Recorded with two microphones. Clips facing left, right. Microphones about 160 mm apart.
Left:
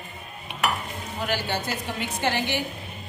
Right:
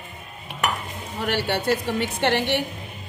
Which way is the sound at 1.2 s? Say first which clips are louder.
Right 6 dB; 65° right (ahead or behind).